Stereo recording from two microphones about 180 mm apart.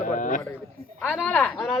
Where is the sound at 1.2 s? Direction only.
10° left (ahead or behind).